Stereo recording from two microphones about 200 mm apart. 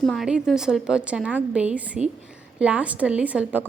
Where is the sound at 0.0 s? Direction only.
Centre (ahead or behind).